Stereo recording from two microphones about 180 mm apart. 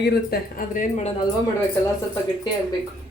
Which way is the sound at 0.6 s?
40° left (ahead or behind).